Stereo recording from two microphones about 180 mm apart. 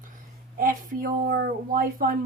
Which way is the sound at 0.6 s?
50° right (ahead or behind).